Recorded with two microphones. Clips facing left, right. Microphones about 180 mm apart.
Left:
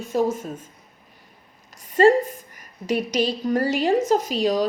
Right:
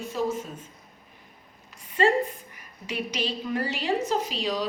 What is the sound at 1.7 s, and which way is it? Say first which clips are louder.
A woman's voice: left 7 dB; 40° left (ahead or behind).